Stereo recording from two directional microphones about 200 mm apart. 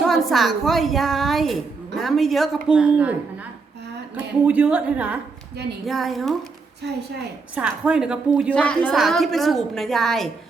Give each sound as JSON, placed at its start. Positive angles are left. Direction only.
{"t": 0.0, "sound": "a woman's voice", "side_deg": 0}
{"t": 7.5, "sound": "a woman's voice", "side_deg": -5}
{"t": 8.5, "sound": "a woman's voice", "side_deg": 5}